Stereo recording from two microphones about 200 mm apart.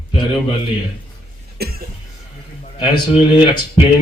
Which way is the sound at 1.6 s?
50° right (ahead or behind).